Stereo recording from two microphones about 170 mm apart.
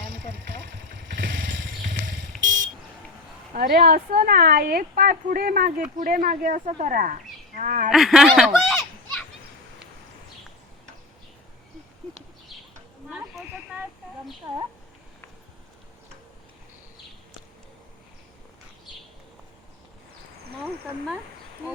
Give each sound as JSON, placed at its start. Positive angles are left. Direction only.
{"t": 1.0, "sound": "motorcycle", "side_deg": -55}
{"t": 1.3, "sound": "motorcycle", "side_deg": -90}
{"t": 1.8, "sound": "a sound", "side_deg": -55}
{"t": 2.4, "sound": "vehicle", "side_deg": -90}
{"t": 3.5, "sound": "a woman's voice", "side_deg": -55}
{"t": 7.9, "sound": "speech", "side_deg": 0}
{"t": 13.1, "sound": "a sound", "side_deg": -5}